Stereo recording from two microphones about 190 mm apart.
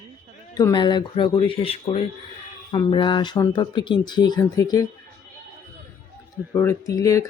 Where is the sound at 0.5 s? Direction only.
20° left (ahead or behind).